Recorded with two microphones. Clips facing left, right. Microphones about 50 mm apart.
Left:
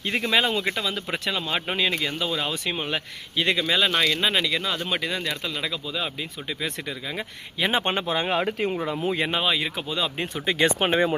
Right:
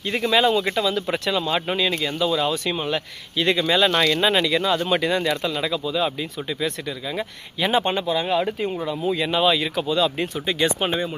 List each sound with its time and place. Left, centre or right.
0.3 s speech: centre
7.7 s speech: left
8.0 s speech: left
9.1 s speech: left
9.4 s speech: centre
10.2 s speech: left